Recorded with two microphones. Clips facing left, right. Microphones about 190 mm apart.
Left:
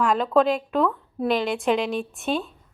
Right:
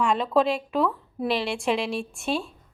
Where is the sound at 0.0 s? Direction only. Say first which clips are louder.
Left 2 dB; 5° left (ahead or behind).